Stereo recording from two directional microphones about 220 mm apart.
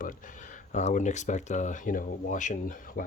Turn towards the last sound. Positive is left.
turn(degrees=40)  # may be behind; listen again after turning